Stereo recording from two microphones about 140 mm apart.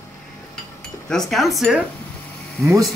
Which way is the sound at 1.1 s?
5° left (ahead or behind).